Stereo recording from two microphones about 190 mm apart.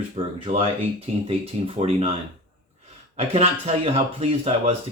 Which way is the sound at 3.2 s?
30° right (ahead or behind).